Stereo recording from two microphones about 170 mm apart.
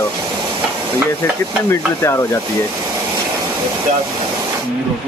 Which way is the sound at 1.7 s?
15° left (ahead or behind).